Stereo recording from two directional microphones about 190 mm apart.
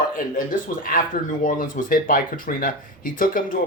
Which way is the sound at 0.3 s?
45° left (ahead or behind).